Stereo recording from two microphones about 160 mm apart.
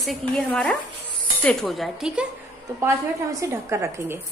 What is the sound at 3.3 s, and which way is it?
Speech, 15° right (ahead or behind).